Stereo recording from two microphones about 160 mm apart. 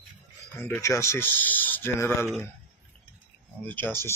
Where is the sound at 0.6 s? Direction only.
15° left (ahead or behind).